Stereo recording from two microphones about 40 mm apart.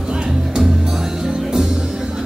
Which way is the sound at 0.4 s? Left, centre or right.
Centre.